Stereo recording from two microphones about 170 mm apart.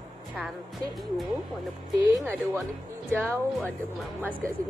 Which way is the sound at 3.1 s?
5° right (ahead or behind).